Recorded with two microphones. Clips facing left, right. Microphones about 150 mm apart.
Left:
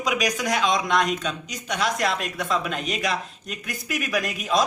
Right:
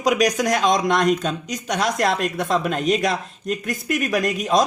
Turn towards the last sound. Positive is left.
turn(degrees=-45)  # may be behind; listen again after turning